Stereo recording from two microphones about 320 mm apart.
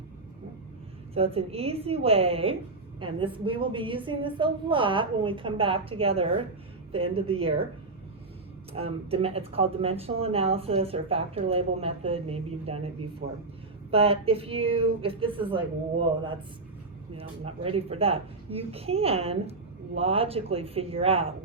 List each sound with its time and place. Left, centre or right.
1.1 s speech: centre
8.7 s speech: centre
13.9 s speech: centre